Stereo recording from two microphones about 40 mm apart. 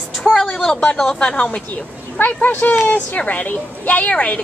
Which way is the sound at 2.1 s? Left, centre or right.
Left.